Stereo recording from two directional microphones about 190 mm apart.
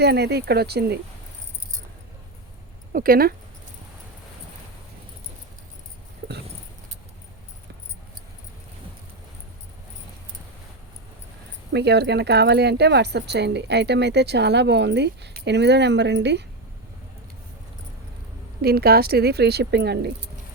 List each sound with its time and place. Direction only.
0.0 s speech: 60° right (ahead or behind)
2.9 s speech: 50° right (ahead or behind)
11.7 s speech: 60° right (ahead or behind)
18.6 s speech: 55° right (ahead or behind)